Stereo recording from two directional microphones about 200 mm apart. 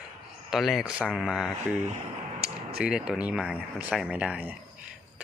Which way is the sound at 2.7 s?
5° right (ahead or behind).